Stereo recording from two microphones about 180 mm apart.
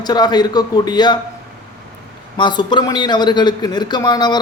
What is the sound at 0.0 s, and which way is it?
A man's voice, 25° left (ahead or behind).